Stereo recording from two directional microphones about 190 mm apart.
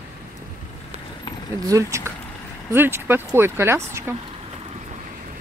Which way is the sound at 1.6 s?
15° right (ahead or behind).